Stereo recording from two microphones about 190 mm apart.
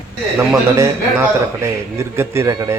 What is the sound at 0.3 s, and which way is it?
A man's voice, 15° right (ahead or behind).